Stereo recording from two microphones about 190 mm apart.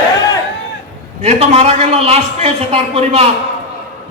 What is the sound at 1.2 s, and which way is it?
A man's voice, 35° right (ahead or behind).